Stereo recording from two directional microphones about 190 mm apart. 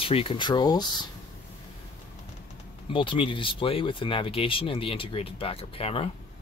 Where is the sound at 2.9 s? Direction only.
25° left (ahead or behind).